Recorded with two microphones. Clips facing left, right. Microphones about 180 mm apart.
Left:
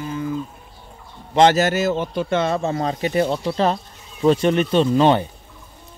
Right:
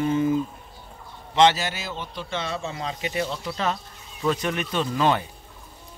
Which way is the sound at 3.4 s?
30° left (ahead or behind).